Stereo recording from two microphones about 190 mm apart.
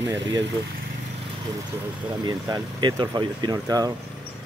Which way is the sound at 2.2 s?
20° right (ahead or behind).